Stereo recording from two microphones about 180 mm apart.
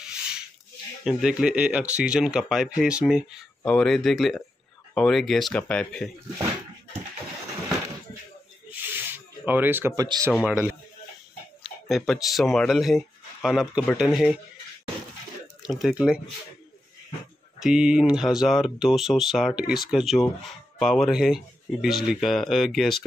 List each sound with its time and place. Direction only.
0.0 s a sound: 5° right (ahead or behind)
1.0 s speech: 5° right (ahead or behind)
3.6 s speech: 5° left (ahead or behind)
8.8 s snake: 10° right (ahead or behind)
9.5 s speech: 10° right (ahead or behind)
10.4 s speech: 10° right (ahead or behind)
15.6 s speech: centre (ahead or behind)
17.6 s speech: 5° right (ahead or behind)